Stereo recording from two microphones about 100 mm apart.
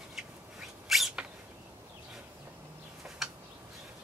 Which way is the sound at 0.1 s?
5° right (ahead or behind).